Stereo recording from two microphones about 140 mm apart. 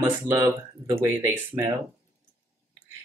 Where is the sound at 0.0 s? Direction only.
20° right (ahead or behind).